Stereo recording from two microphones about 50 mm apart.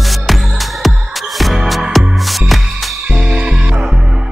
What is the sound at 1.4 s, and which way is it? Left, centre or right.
Music, centre.